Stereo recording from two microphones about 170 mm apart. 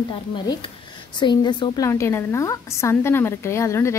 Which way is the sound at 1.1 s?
25° left (ahead or behind).